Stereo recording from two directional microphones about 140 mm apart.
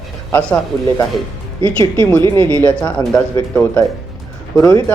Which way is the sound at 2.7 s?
10° left (ahead or behind).